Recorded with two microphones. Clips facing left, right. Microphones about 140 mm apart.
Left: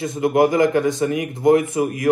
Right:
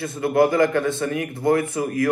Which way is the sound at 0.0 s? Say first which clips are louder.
Left 2 dB; 20° left (ahead or behind).